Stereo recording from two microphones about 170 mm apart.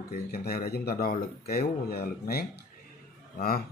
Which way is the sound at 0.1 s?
60° left (ahead or behind).